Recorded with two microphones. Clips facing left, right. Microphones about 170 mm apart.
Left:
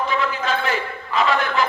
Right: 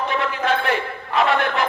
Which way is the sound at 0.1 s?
60° right (ahead or behind).